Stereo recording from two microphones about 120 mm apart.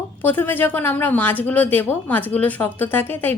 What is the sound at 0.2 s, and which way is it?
Speech, 15° left (ahead or behind).